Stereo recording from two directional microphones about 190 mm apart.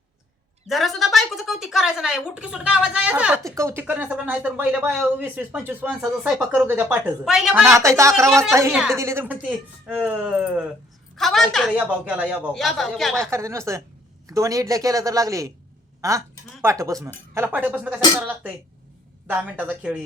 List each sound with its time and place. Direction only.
0.7 s a woman's voice: centre (ahead or behind)
3.4 s speech: 15° right (ahead or behind)
7.6 s speech: 15° right (ahead or behind)
8.7 s a woman's voice: centre (ahead or behind)
9.0 s a woman's voice: 15° right (ahead or behind); by 13.3 s centre (ahead or behind)
13.3 s speech: 15° right (ahead or behind)